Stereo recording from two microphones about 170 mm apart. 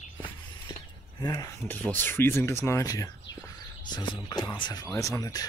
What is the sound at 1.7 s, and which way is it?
Speech, 10° left (ahead or behind).